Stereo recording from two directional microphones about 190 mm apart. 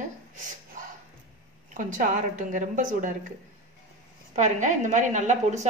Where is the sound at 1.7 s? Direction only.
45° right (ahead or behind).